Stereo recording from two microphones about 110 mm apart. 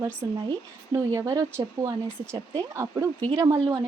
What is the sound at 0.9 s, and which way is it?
A woman's voice, 30° right (ahead or behind).